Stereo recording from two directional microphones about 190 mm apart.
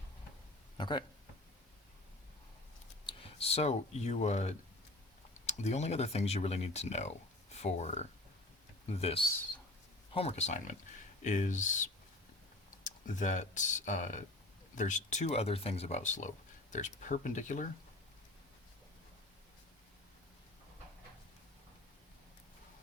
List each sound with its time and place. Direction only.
0.8 s speech: 25° left (ahead or behind)
3.1 s speech: 30° left (ahead or behind)